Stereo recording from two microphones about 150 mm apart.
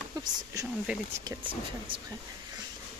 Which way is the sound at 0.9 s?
10° right (ahead or behind).